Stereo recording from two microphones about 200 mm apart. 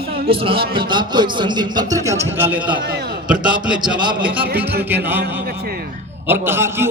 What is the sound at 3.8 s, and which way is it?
Speech, 20° right (ahead or behind).